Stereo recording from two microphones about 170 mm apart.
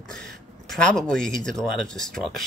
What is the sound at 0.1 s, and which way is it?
Speech, 5° left (ahead or behind).